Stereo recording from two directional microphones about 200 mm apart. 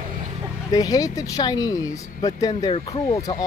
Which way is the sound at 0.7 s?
20° left (ahead or behind).